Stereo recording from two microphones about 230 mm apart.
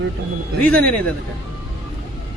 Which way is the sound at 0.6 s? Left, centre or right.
Centre.